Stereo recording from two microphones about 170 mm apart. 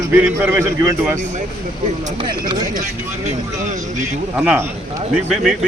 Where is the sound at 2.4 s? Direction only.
25° right (ahead or behind).